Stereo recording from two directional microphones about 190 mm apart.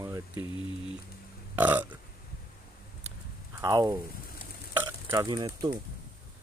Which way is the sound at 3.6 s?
20° right (ahead or behind).